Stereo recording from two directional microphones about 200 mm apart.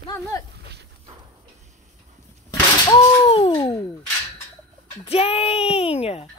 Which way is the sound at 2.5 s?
20° left (ahead or behind).